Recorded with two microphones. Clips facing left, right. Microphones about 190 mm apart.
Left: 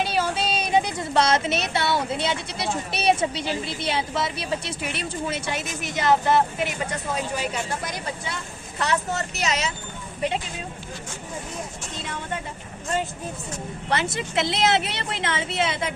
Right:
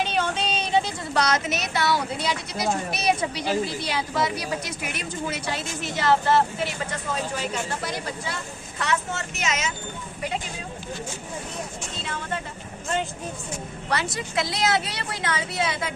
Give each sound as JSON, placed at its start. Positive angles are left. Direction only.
{"t": 0.0, "sound": "a woman's voice", "side_deg": 10}
{"t": 8.8, "sound": "speech", "side_deg": 35}
{"t": 13.9, "sound": "a woman's voice", "side_deg": 25}